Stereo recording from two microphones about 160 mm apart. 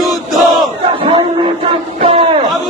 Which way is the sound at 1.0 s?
35° right (ahead or behind).